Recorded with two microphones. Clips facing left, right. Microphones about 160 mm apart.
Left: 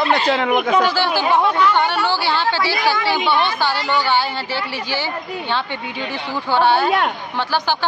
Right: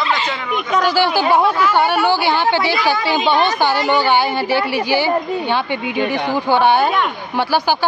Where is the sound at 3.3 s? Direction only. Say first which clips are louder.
Right 3 dB; 40° right (ahead or behind).